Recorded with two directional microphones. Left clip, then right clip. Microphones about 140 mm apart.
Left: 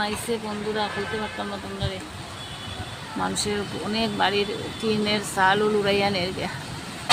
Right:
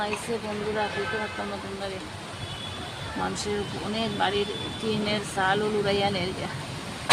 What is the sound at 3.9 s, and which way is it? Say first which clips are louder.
Speech: left 4 dB; 35° left (ahead or behind).